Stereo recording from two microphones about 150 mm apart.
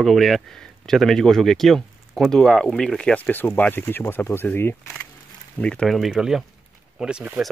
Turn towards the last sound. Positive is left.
turn(degrees=-5)  # may be behind; listen again after turning